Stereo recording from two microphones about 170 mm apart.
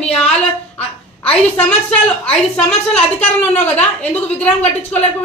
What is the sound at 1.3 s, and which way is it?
Speech, 5° left (ahead or behind).